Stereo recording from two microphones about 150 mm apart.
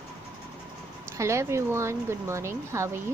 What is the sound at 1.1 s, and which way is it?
Speech, 20° right (ahead or behind).